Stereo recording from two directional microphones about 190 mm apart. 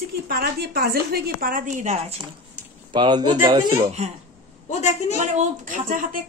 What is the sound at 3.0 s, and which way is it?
Speech, 25° right (ahead or behind).